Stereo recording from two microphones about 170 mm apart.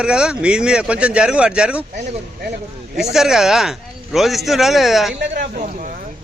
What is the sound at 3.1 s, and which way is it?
Speech, 5° right (ahead or behind).